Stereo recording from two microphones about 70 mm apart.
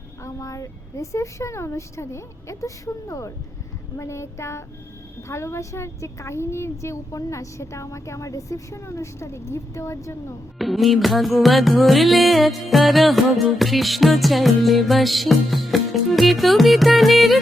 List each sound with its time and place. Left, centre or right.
0.3 s speech: left
10.6 s music: centre